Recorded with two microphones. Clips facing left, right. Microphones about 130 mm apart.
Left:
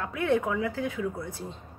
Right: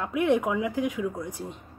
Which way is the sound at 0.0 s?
15° right (ahead or behind).